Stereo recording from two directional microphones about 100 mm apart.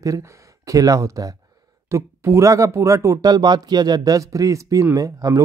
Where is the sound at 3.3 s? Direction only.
40° right (ahead or behind).